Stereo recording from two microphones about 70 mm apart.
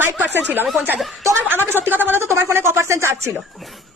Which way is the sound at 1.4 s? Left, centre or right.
Right.